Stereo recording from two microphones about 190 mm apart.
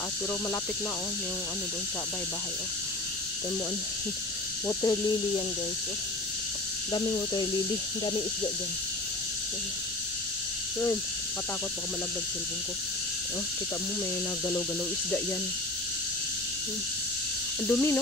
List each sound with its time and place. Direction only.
4.6 s speech: 20° left (ahead or behind)
6.9 s speech: 25° left (ahead or behind)
17.6 s speech: 10° left (ahead or behind)